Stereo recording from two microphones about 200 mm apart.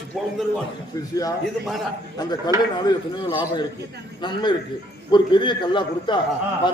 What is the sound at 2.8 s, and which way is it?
A man's voice, 20° left (ahead or behind).